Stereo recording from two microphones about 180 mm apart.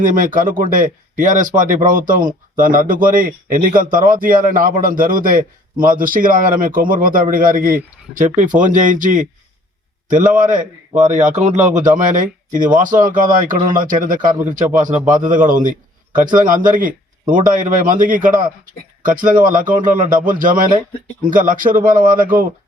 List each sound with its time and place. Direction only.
0.0 s a man's voice: 50° right (ahead or behind)